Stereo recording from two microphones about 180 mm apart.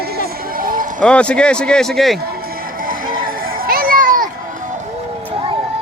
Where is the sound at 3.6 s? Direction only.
55° right (ahead or behind).